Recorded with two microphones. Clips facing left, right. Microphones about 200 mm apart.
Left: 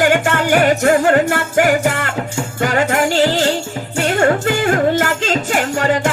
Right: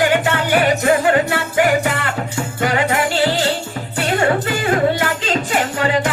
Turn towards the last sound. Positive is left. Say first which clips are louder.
# left 2 dB
turn(degrees=45)  # may be behind; listen again after turning